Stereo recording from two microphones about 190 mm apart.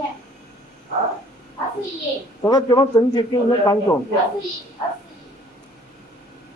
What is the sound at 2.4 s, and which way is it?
A man's voice, 20° left (ahead or behind).